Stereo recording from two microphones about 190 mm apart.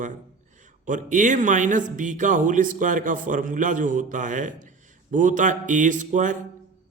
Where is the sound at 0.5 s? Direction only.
40° right (ahead or behind).